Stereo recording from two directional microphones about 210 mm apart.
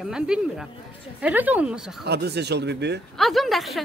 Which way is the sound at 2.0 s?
50° right (ahead or behind).